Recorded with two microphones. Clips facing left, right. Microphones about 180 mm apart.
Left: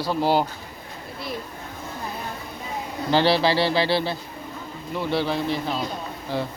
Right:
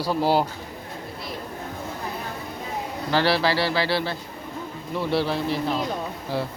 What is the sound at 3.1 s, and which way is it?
Speech, 20° left (ahead or behind).